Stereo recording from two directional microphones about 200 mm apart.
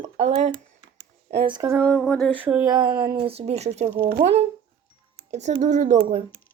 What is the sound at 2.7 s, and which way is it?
Speech, 20° right (ahead or behind).